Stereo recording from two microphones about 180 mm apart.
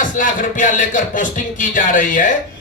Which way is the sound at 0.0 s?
45° left (ahead or behind).